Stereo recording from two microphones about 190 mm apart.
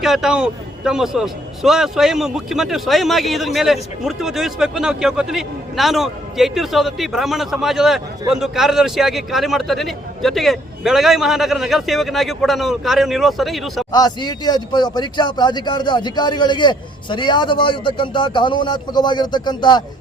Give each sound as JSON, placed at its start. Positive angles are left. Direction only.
{"t": 0.0, "sound": "a man's voice", "side_deg": 0}
{"t": 13.9, "sound": "a man's voice", "side_deg": 20}